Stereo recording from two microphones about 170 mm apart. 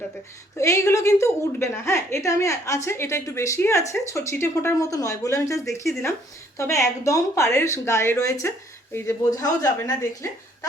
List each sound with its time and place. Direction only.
0.6 s a woman's voice: 15° left (ahead or behind)